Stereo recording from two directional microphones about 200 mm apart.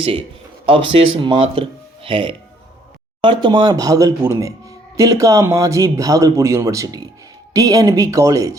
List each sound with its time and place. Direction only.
0.0 s speech: 30° right (ahead or behind)